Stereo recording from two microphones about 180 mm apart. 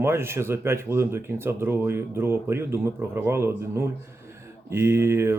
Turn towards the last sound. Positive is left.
turn(degrees=-15)  # may be behind; listen again after turning